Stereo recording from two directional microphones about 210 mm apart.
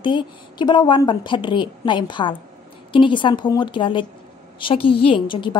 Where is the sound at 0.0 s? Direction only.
20° left (ahead or behind).